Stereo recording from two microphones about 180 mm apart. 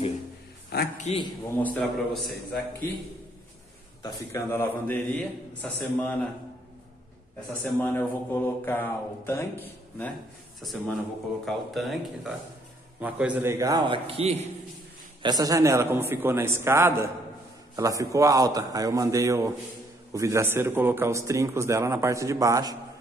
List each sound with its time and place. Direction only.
0.9 s a man's voice: 40° left (ahead or behind)
1.6 s speech: 5° left (ahead or behind)
4.0 s speech: 15° left (ahead or behind)
7.6 s a man's voice: 10° left (ahead or behind); by 14.5 s 35° right (ahead or behind)
15.2 s a man's voice: 20° right (ahead or behind)